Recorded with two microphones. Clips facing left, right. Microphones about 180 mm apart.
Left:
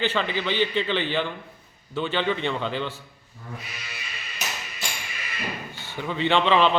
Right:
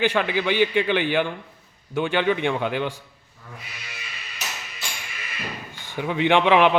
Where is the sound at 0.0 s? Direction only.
10° right (ahead or behind).